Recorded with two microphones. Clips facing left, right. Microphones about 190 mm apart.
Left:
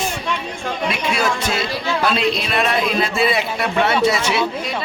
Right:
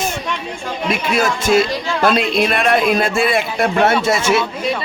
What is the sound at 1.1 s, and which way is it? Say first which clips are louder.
A man's voice: right 10 dB; 50° right (ahead or behind).